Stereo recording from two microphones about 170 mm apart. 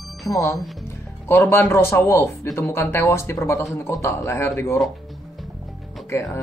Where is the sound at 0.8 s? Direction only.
15° left (ahead or behind).